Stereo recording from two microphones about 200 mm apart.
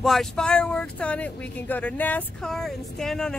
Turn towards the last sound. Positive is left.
turn(degrees=5)  # may be behind; listen again after turning